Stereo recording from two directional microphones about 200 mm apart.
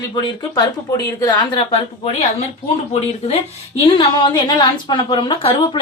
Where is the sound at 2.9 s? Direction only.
30° left (ahead or behind).